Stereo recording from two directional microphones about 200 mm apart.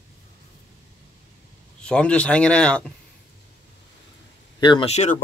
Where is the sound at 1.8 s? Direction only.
5° left (ahead or behind).